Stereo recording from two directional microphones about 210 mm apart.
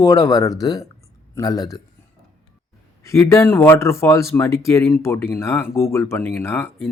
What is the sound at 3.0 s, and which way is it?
Speech, 15° left (ahead or behind).